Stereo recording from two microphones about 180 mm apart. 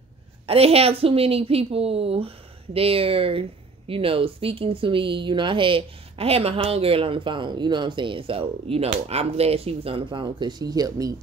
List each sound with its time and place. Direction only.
0.5 s a woman's voice: 35° right (ahead or behind)